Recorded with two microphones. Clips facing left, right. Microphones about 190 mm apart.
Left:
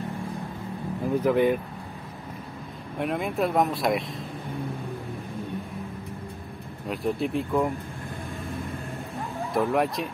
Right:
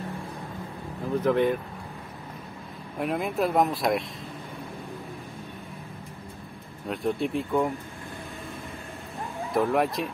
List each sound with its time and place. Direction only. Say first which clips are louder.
1.1 s speech: left 1 dB; 10° left (ahead or behind)
3.0 s speech: even; centre (ahead or behind)
6.9 s speech: even; centre (ahead or behind)
9.5 s speech: even; centre (ahead or behind)